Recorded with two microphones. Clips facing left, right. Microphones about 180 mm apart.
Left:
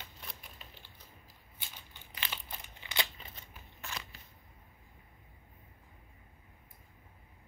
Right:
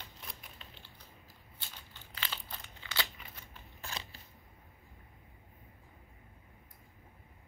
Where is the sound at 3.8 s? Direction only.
30° right (ahead or behind).